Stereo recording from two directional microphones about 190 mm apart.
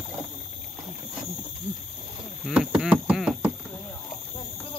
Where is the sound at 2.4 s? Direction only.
5° right (ahead or behind).